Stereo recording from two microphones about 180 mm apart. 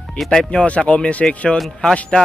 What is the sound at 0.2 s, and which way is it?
Speech, centre (ahead or behind).